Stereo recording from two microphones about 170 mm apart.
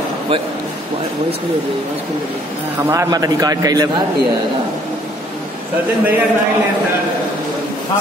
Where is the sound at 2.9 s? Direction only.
20° right (ahead or behind).